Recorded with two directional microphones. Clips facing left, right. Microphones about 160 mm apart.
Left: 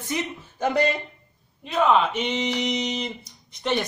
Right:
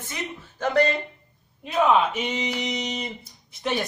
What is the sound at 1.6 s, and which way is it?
Speech, 5° right (ahead or behind).